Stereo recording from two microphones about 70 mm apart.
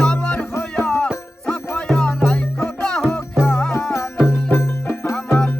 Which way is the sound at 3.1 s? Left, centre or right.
Left.